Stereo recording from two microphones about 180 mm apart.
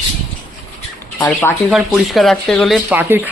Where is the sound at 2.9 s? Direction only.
10° right (ahead or behind).